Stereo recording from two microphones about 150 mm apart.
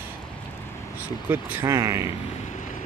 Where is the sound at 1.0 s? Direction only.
10° right (ahead or behind).